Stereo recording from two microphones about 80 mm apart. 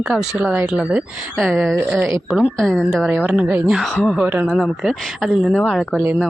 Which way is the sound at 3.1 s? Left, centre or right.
Centre.